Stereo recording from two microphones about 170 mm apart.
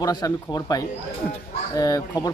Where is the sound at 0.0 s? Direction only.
25° left (ahead or behind).